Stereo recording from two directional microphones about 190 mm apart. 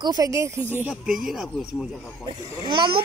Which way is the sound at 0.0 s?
20° right (ahead or behind).